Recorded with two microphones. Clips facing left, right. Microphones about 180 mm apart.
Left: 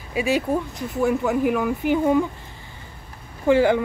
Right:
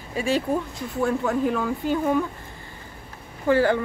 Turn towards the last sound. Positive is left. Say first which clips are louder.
# left 3 dB
turn(degrees=15)  # may be behind; listen again after turning